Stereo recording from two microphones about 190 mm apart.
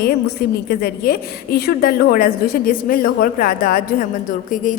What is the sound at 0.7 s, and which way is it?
A woman's voice, 55° left (ahead or behind).